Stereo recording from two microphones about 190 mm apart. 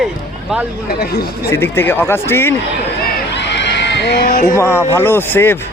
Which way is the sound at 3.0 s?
65° left (ahead or behind).